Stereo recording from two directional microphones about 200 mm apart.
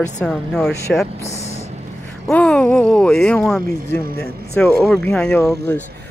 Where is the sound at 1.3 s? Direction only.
35° left (ahead or behind).